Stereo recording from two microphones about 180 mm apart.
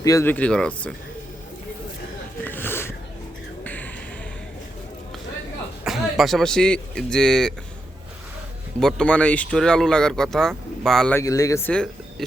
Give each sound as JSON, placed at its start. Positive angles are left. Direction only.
{"t": 0.0, "sound": "speech", "side_deg": 15}
{"t": 2.4, "sound": "a sound", "side_deg": 10}
{"t": 5.8, "sound": "a man's voice", "side_deg": 0}
{"t": 8.8, "sound": "speech", "side_deg": 5}
{"t": 11.2, "sound": "speech", "side_deg": 20}